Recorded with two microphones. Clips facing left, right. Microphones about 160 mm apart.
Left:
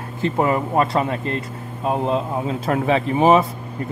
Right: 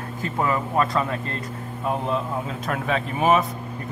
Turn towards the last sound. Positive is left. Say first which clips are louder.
# left 5 dB
turn(degrees=30)  # may be behind; listen again after turning